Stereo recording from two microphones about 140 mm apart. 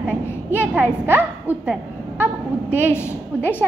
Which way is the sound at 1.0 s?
15° right (ahead or behind).